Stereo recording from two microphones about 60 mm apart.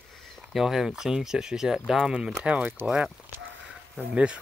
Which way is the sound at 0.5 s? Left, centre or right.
Centre.